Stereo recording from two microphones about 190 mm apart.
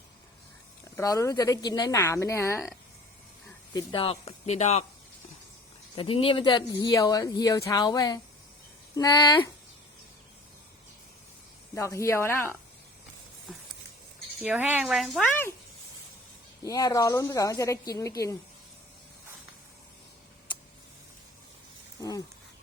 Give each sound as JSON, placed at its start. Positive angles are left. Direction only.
{"t": 0.9, "sound": "a woman's voice", "side_deg": 15}
{"t": 3.7, "sound": "speech", "side_deg": 25}
{"t": 6.0, "sound": "speech", "side_deg": 30}
{"t": 11.7, "sound": "a woman's voice", "side_deg": 15}
{"t": 14.4, "sound": "speech", "side_deg": -10}
{"t": 16.6, "sound": "a woman's voice", "side_deg": 20}
{"t": 22.0, "sound": "speech", "side_deg": 20}